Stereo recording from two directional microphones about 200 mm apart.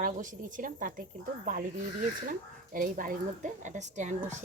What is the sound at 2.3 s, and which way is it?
Speech, 45° right (ahead or behind).